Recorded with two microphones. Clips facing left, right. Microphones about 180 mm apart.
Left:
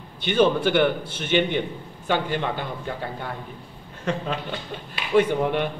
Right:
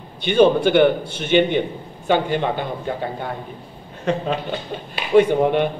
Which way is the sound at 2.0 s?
20° right (ahead or behind).